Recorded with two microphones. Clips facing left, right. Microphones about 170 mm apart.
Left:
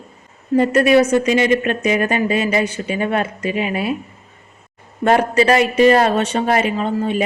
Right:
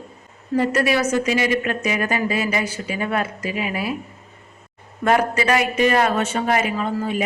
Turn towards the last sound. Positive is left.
turn(degrees=25)  # may be behind; listen again after turning